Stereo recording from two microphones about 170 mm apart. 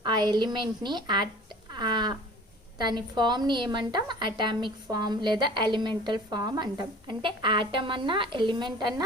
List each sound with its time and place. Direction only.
0.0 s a woman's voice: 25° right (ahead or behind)
1.7 s livestock: 25° right (ahead or behind)
2.7 s a woman's voice: 25° right (ahead or behind)